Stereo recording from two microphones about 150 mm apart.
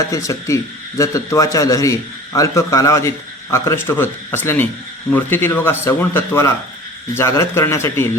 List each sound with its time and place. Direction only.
0.0 s a man's voice: 20° left (ahead or behind)